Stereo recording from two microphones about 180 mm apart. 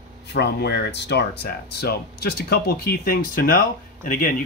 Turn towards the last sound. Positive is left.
turn(degrees=50)  # may be behind; listen again after turning